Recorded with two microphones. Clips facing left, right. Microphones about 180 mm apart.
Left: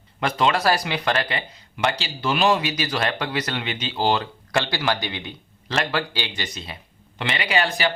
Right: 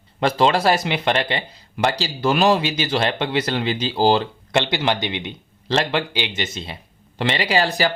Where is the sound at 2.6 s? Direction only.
25° right (ahead or behind).